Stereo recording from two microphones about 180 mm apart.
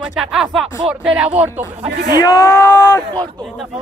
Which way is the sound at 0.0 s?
5° right (ahead or behind).